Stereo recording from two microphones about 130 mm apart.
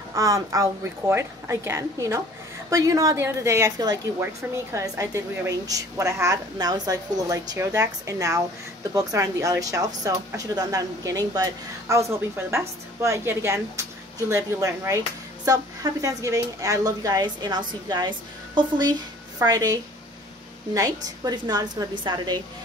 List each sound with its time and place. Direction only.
0.1 s a woman's voice: 25° right (ahead or behind)